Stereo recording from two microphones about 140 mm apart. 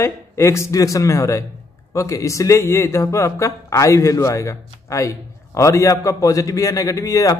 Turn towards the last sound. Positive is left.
turn(degrees=25)  # may be behind; listen again after turning